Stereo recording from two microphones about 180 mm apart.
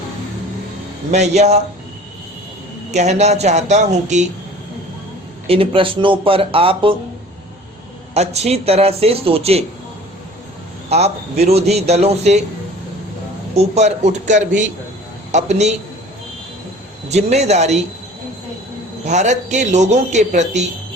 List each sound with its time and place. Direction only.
1.1 s a man's voice: 40° right (ahead or behind)
2.9 s a man's voice: 40° right (ahead or behind)
5.5 s speech: 30° right (ahead or behind)
8.1 s a man's voice: 35° right (ahead or behind)
10.8 s a man's voice: 35° right (ahead or behind)
13.7 s a man's voice: 40° right (ahead or behind)
17.1 s a man's voice: 40° right (ahead or behind)
19.0 s a man's voice: 40° right (ahead or behind)